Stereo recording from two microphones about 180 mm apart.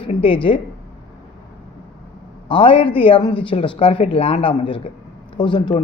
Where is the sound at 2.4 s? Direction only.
30° left (ahead or behind).